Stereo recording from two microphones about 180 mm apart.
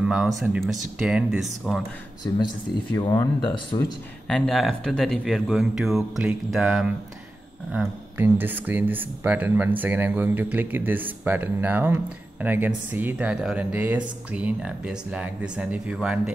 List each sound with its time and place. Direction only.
0.0 s a sound: 5° right (ahead or behind)
0.4 s speech: 5° right (ahead or behind)
2.3 s speech: 15° left (ahead or behind)
4.3 s speech: centre (ahead or behind)